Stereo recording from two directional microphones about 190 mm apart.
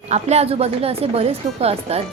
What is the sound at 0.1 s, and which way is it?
A woman's voice, 35° right (ahead or behind).